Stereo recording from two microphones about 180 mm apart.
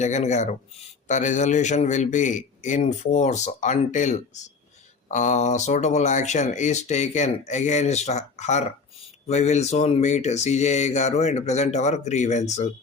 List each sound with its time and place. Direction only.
0.0 s speech: 40° left (ahead or behind)